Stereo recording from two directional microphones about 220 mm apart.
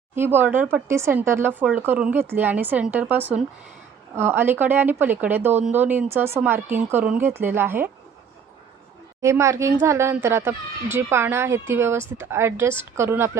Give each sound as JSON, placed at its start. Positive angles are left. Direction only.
{"t": 0.2, "sound": "speech", "side_deg": -10}
{"t": 9.2, "sound": "speech", "side_deg": -15}